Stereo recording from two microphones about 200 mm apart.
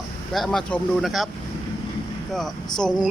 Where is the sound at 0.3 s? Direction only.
Centre (ahead or behind).